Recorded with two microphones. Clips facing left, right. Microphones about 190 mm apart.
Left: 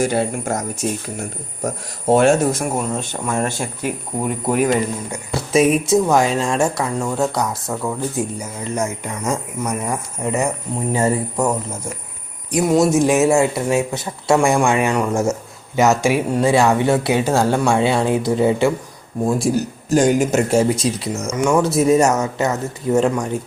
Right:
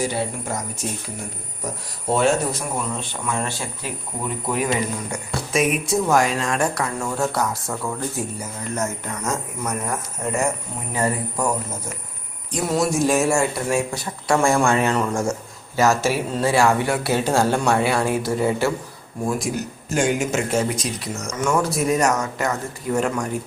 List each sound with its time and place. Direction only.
0.0 s speech: 50° left (ahead or behind)
5.5 s speech: 25° left (ahead or behind)
10.9 s speech: 25° left (ahead or behind)
12.5 s speech: 20° left (ahead or behind)